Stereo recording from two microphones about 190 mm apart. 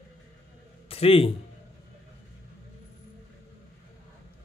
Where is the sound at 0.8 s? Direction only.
30° left (ahead or behind).